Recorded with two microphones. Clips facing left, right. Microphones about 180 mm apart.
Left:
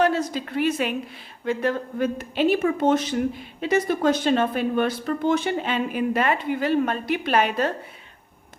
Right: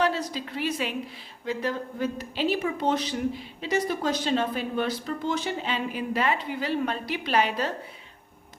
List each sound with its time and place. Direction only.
0.0 s speech: 50° left (ahead or behind)